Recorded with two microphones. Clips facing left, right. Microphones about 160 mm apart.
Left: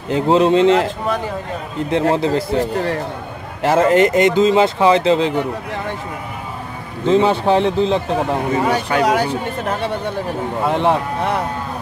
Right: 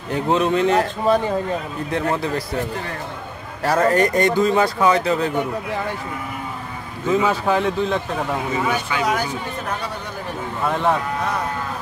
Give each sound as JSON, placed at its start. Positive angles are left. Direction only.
{"t": 0.1, "sound": "speech", "side_deg": 30}
{"t": 7.1, "sound": "speech", "side_deg": 30}